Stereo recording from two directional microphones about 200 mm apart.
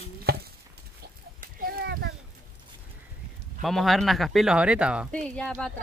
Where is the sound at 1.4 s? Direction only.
50° right (ahead or behind).